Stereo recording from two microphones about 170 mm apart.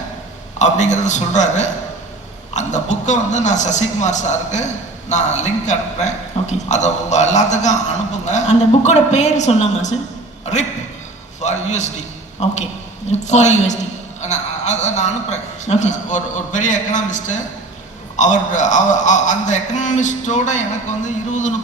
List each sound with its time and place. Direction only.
0.6 s a man's voice: 45° left (ahead or behind)
11.3 s a man's voice: 45° left (ahead or behind)